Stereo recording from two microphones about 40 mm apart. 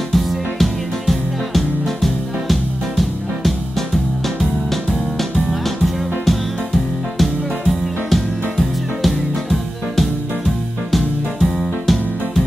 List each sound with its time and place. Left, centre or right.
0.1 s music: centre
6.2 s music: centre